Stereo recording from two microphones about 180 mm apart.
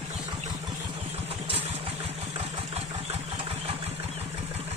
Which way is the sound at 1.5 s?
30° right (ahead or behind).